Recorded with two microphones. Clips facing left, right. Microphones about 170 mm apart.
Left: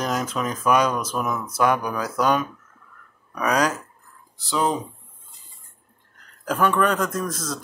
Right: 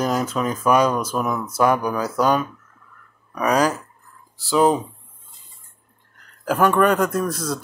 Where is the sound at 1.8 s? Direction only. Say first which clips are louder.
Right 3 dB; 25° right (ahead or behind).